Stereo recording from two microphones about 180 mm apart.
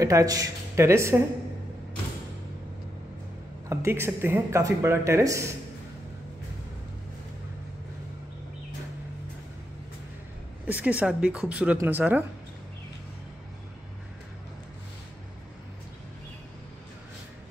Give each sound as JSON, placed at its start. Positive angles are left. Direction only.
{"t": 0.0, "sound": "speech", "side_deg": -20}
{"t": 3.6, "sound": "speech", "side_deg": -15}
{"t": 10.7, "sound": "speech", "side_deg": -10}